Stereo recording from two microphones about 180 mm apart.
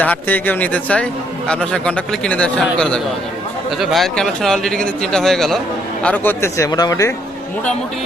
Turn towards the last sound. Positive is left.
turn(degrees=20)  # may be behind; listen again after turning